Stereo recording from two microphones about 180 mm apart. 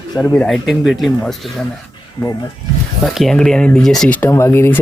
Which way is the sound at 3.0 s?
Centre (ahead or behind).